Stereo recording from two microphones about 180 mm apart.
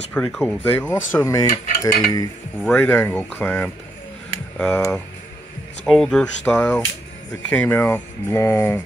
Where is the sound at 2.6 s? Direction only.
10° left (ahead or behind).